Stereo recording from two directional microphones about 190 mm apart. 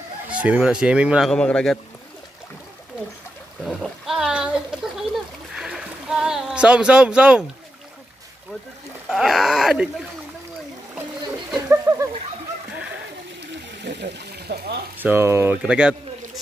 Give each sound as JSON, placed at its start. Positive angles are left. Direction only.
{"t": 0.3, "sound": "speech", "side_deg": -5}
{"t": 3.6, "sound": "speech", "side_deg": 0}
{"t": 9.1, "sound": "speech", "side_deg": 0}
{"t": 11.5, "sound": "a sound", "side_deg": -10}
{"t": 13.8, "sound": "a sound", "side_deg": -65}
{"t": 15.0, "sound": "speech", "side_deg": -10}